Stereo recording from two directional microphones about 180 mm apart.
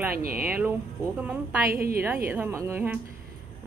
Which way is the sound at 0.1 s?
55° right (ahead or behind).